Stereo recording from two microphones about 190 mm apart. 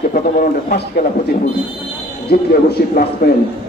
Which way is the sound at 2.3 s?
55° left (ahead or behind).